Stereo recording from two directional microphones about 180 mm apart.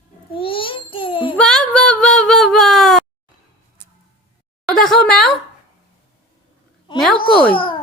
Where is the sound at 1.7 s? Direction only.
5° left (ahead or behind).